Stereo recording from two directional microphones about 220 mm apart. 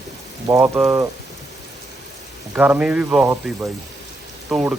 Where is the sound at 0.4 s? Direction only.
10° right (ahead or behind).